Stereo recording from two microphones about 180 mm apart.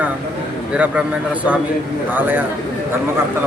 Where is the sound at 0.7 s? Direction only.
5° right (ahead or behind).